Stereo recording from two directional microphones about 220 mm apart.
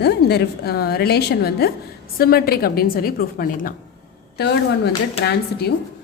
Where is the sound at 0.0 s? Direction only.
45° left (ahead or behind).